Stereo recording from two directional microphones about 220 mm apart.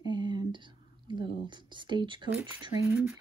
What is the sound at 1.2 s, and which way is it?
Speech, 20° right (ahead or behind).